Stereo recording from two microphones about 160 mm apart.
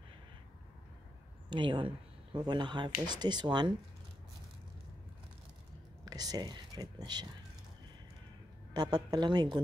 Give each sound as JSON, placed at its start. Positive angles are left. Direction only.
{"t": 1.5, "sound": "speech", "side_deg": -30}
{"t": 6.0, "sound": "speech", "side_deg": -25}
{"t": 8.7, "sound": "speech", "side_deg": -25}